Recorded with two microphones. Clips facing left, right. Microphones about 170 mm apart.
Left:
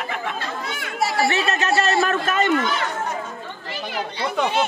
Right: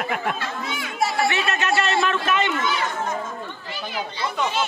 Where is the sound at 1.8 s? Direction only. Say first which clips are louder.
Left 2 dB; 40° left (ahead or behind).